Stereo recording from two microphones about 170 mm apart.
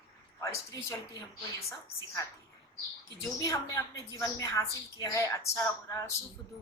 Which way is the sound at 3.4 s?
20° left (ahead or behind).